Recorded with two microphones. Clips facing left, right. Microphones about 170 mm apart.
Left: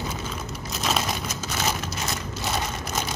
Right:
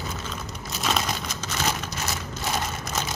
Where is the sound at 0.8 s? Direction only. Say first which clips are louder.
Even; centre (ahead or behind).